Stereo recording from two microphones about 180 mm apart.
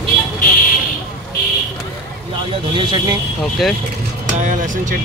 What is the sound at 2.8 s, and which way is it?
Speech, 25° right (ahead or behind).